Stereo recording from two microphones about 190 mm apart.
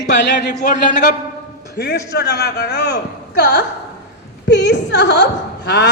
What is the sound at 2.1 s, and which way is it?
Speech, 60° left (ahead or behind).